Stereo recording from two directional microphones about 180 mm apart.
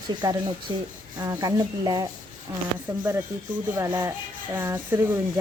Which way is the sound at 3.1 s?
10° right (ahead or behind).